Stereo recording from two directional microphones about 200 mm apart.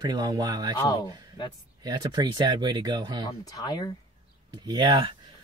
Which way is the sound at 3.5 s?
20° left (ahead or behind).